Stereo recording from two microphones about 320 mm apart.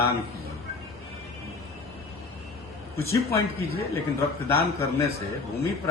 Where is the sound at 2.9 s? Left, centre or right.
Centre.